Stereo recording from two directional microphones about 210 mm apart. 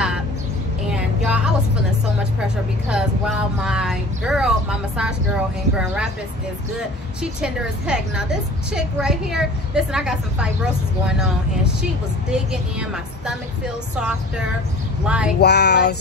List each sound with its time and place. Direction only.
0.8 s vehicle: 5° right (ahead or behind)
2.4 s a woman's voice: 5° right (ahead or behind)
15.0 s a woman's voice: 5° right (ahead or behind)
15.4 s music: 50° left (ahead or behind)